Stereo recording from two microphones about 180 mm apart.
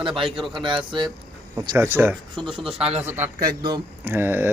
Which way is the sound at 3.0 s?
10° right (ahead or behind).